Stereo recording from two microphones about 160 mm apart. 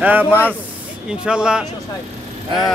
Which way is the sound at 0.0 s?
10° right (ahead or behind).